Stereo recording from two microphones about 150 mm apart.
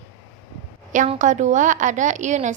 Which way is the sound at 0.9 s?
50° right (ahead or behind).